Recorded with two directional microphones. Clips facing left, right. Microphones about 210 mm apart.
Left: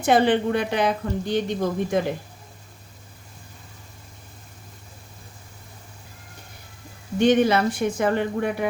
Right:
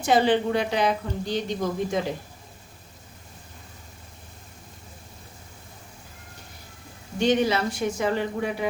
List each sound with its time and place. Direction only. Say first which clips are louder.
0.0 s a woman's voice: left 2 dB; 55° left (ahead or behind)
7.2 s a woman's voice: left 4 dB; 55° left (ahead or behind)